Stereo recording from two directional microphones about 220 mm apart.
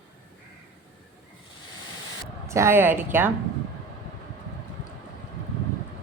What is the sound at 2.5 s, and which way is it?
Speech, 10° right (ahead or behind).